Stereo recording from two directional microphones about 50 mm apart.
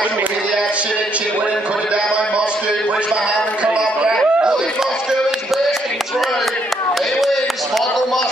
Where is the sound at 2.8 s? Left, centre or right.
Right.